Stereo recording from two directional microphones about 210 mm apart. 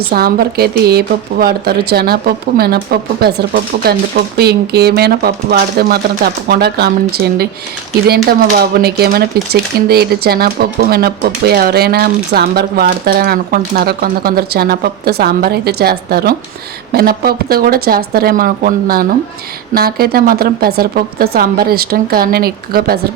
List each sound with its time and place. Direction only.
0.1 s speech: 45° right (ahead or behind)